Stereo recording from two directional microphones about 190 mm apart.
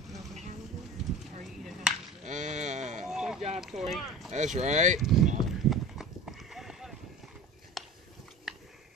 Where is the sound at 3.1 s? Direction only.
Centre (ahead or behind).